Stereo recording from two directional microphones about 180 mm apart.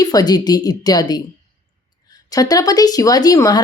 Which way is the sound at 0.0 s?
20° left (ahead or behind).